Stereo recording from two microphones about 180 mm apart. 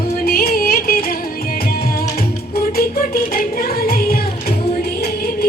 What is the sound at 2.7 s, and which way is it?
Music, 55° left (ahead or behind).